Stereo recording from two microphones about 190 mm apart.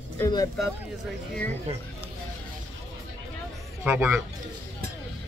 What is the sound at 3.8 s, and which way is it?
Speech, 10° right (ahead or behind).